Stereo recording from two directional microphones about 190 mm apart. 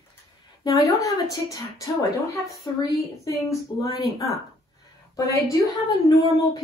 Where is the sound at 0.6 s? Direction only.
15° left (ahead or behind).